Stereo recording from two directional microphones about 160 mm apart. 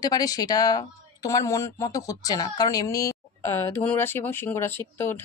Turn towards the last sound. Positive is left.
turn(degrees=15)  # may be behind; listen again after turning